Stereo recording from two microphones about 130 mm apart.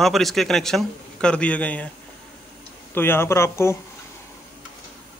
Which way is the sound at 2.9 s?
15° left (ahead or behind).